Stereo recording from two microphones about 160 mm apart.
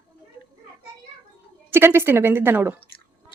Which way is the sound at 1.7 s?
15° right (ahead or behind).